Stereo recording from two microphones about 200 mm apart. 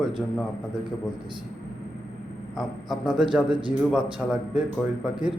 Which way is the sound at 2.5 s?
Centre (ahead or behind).